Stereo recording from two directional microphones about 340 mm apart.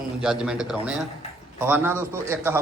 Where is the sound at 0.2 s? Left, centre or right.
Centre.